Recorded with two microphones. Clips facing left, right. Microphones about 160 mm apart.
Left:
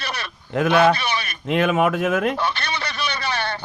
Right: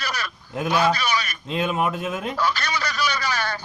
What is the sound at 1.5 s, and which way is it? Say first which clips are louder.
Speech: left 6 dB; 75° left (ahead or behind).